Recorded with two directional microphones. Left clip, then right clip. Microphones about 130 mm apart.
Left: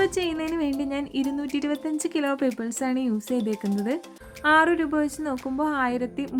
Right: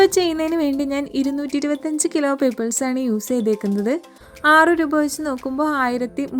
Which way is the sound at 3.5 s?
Centre (ahead or behind).